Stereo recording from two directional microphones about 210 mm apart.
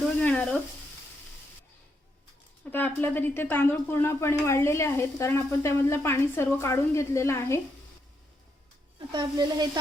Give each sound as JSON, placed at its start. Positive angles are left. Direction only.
{"t": 0.2, "sound": "frying", "side_deg": 5}
{"t": 2.7, "sound": "speech", "side_deg": 10}
{"t": 9.1, "sound": "speech", "side_deg": -20}